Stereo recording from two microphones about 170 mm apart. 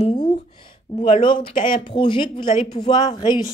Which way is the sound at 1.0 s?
30° left (ahead or behind).